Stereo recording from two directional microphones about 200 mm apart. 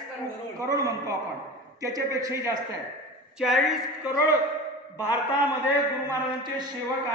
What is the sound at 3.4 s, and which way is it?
Speech, centre (ahead or behind).